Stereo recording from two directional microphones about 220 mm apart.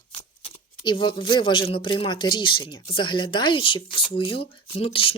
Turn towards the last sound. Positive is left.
turn(degrees=25)  # may be behind; listen again after turning